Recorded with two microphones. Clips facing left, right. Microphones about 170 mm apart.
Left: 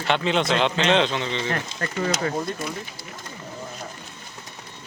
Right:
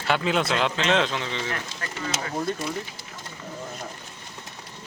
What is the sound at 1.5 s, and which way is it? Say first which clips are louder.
Speech: left 5 dB; 40° left (ahead or behind).